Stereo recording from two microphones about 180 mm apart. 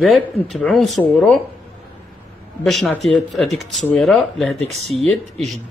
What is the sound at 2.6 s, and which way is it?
Speech, centre (ahead or behind).